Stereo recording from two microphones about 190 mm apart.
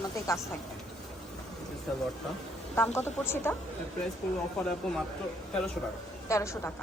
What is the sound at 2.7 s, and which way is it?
Speech, 10° left (ahead or behind).